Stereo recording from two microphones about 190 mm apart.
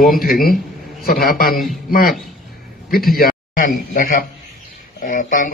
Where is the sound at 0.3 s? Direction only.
50° left (ahead or behind).